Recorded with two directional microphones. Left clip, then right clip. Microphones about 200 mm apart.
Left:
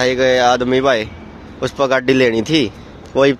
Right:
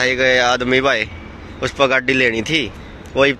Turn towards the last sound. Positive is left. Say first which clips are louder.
# left 2 dB
turn(degrees=25)  # may be behind; listen again after turning